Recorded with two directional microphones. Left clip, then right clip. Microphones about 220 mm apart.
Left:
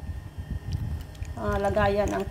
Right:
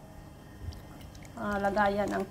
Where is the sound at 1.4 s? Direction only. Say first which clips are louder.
Left 3 dB; 10° left (ahead or behind).